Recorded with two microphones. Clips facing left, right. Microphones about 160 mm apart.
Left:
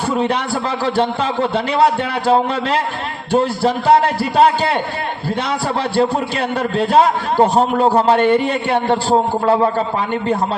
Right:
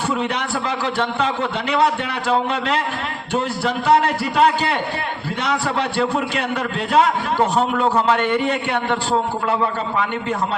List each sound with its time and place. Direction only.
0.1 s a man's voice: 35° left (ahead or behind)
6.0 s a man's voice: 35° left (ahead or behind)